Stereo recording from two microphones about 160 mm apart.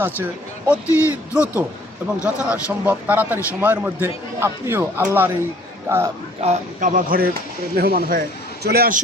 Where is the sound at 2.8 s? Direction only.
10° right (ahead or behind).